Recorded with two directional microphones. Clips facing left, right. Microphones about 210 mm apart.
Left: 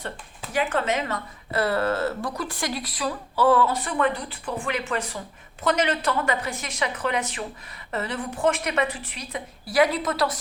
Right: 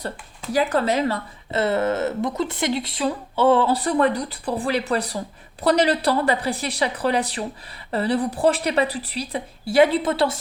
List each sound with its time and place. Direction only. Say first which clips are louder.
0.5 s speech: right 4 dB; 35° right (ahead or behind)